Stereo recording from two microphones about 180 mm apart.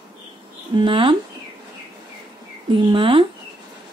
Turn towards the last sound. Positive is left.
turn(degrees=-30)  # may be behind; listen again after turning